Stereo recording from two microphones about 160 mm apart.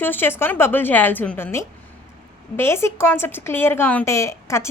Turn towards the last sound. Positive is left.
turn(degrees=20)  # may be behind; listen again after turning